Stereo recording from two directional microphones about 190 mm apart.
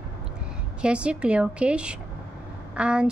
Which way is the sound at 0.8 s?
5° right (ahead or behind).